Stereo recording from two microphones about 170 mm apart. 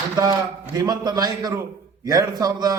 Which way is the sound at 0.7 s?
25° right (ahead or behind).